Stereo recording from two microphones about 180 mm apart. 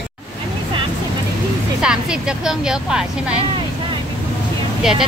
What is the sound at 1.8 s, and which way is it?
Speech, 5° right (ahead or behind).